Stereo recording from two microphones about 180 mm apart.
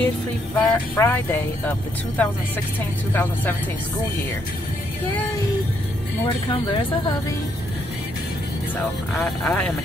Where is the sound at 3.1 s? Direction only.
10° left (ahead or behind).